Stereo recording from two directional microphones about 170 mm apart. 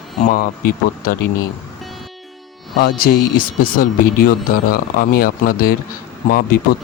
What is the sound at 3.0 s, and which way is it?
Speech, 55° left (ahead or behind).